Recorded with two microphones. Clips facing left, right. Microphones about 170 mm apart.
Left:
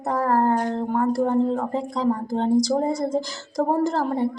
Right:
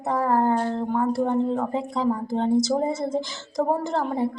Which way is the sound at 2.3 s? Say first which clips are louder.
Left 1 dB; 35° left (ahead or behind).